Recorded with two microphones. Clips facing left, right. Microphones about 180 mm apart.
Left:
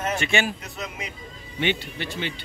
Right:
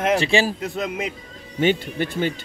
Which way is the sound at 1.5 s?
45° right (ahead or behind).